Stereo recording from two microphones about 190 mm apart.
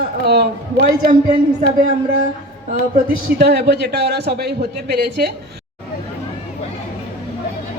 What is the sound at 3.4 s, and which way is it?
Speech, 60° right (ahead or behind).